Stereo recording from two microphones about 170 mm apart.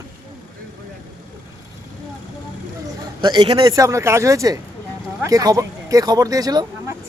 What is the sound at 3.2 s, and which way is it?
A man's voice, 25° right (ahead or behind).